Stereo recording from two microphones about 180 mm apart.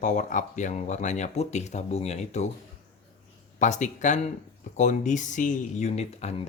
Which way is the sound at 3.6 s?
40° left (ahead or behind).